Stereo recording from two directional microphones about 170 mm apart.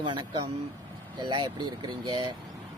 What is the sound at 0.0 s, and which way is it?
Speech, 30° right (ahead or behind).